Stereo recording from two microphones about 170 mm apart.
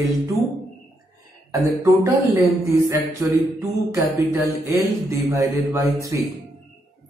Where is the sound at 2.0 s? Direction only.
15° right (ahead or behind).